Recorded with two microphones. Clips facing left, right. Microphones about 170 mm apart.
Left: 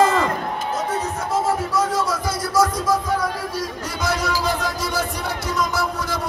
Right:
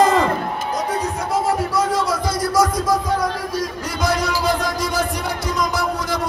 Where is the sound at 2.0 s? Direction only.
15° right (ahead or behind).